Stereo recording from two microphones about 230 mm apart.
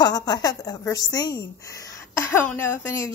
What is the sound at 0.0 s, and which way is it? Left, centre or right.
A woman's voice, centre.